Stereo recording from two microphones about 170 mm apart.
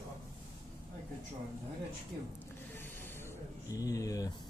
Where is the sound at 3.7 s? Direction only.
20° left (ahead or behind).